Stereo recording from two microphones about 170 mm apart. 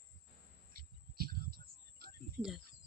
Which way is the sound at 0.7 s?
60° right (ahead or behind).